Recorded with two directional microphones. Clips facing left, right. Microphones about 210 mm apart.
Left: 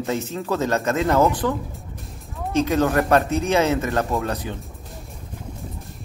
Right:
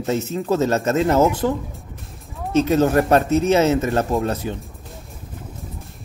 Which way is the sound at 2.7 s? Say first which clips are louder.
Right 3 dB; 30° right (ahead or behind).